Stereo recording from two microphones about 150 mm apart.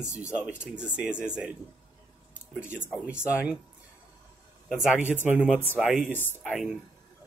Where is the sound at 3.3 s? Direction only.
10° right (ahead or behind).